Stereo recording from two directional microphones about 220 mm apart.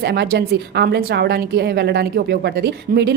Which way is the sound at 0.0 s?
50° right (ahead or behind).